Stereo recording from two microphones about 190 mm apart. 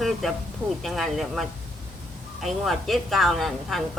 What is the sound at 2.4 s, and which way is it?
A woman's voice, centre (ahead or behind).